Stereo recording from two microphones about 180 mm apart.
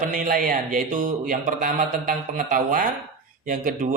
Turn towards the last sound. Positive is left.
turn(degrees=-50)  # may be behind; listen again after turning